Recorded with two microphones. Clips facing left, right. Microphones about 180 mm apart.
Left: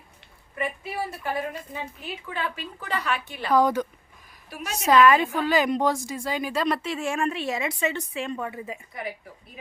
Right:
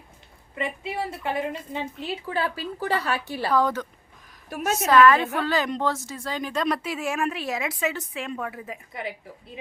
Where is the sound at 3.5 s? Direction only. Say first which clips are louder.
Left 3 dB; 15° left (ahead or behind).